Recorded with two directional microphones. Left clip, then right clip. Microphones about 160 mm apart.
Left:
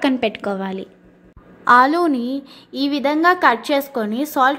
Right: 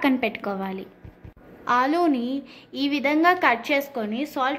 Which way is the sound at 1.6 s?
35° left (ahead or behind).